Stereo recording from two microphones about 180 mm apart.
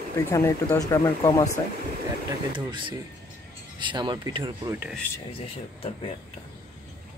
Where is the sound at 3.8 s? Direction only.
25° right (ahead or behind).